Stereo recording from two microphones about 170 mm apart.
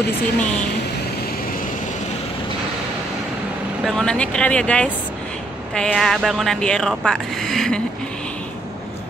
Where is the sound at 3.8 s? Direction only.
5° left (ahead or behind).